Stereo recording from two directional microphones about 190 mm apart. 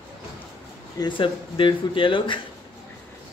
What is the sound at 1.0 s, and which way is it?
Speech, 25° left (ahead or behind).